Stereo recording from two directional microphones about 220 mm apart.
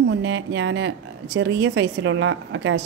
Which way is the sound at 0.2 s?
60° right (ahead or behind).